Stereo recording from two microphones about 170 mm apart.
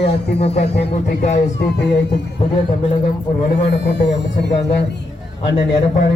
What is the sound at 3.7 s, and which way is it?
Speech, 90° left.